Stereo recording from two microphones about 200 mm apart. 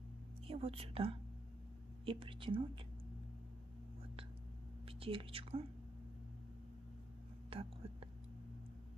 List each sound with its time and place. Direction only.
0.5 s speech: 30° right (ahead or behind)
4.8 s speech: 30° right (ahead or behind)
7.5 s speech: 30° right (ahead or behind)